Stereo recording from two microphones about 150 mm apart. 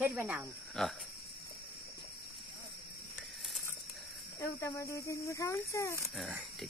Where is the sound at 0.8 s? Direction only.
5° left (ahead or behind).